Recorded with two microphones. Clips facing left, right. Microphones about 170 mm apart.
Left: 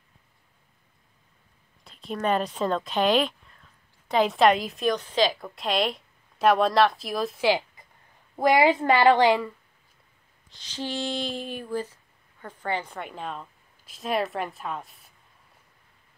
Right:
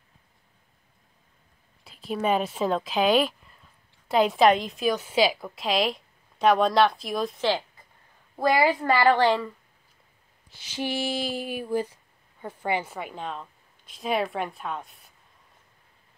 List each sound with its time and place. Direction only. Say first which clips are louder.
1.9 s a woman's voice: right 1 dB; centre (ahead or behind)
8.4 s a woman's voice: left 2 dB; 20° left (ahead or behind)
10.5 s a sound: right 2 dB; 10° right (ahead or behind)